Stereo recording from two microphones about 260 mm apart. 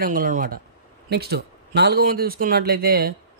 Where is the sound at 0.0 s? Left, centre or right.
Right.